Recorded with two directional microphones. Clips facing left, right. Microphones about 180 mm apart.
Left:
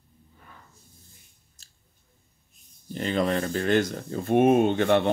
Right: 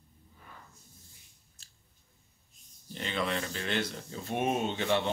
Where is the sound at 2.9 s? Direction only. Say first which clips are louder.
Left 8 dB; 40° left (ahead or behind).